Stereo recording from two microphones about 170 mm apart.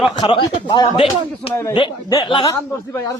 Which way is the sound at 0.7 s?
30° left (ahead or behind).